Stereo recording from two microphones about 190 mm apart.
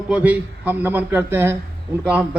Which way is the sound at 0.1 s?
10° right (ahead or behind).